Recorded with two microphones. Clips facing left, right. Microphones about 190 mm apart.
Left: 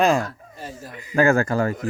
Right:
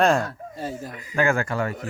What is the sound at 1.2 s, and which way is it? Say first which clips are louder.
Speech: left 5 dB; 40° left (ahead or behind).